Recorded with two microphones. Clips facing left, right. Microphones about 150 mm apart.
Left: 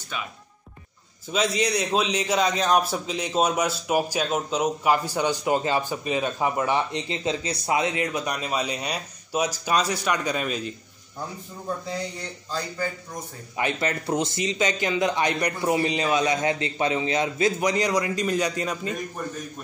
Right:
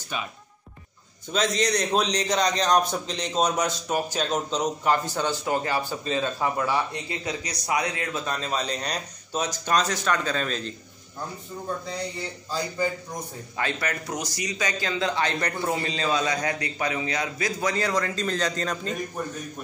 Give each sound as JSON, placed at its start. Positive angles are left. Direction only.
{"t": 1.3, "sound": "a man's voice", "side_deg": 5}
{"t": 13.6, "sound": "a man's voice", "side_deg": 20}